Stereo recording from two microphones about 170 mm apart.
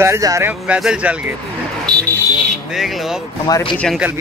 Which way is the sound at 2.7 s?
Centre (ahead or behind).